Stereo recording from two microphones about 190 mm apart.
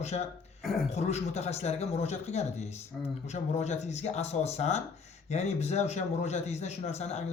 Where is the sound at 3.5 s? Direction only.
35° left (ahead or behind).